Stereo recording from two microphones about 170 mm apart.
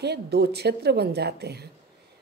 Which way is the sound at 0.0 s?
75° right (ahead or behind).